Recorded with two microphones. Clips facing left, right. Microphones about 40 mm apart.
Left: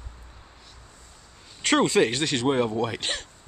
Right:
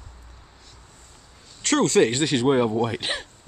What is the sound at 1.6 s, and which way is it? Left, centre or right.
Speech, centre.